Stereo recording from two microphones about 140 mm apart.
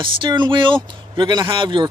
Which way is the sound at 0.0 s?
35° right (ahead or behind).